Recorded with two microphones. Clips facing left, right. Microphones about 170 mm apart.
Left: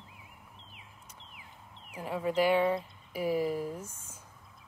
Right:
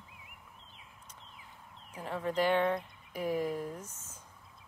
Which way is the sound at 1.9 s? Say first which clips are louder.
Left 3 dB; 10° left (ahead or behind).